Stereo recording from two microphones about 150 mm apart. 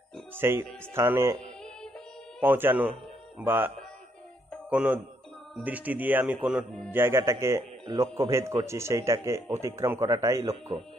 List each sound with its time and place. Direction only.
0.3 s speech: 15° right (ahead or behind)
2.4 s speech: 10° right (ahead or behind)
6.9 s a man's voice: 15° right (ahead or behind)